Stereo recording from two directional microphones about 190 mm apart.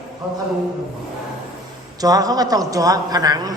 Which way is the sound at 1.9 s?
20° right (ahead or behind).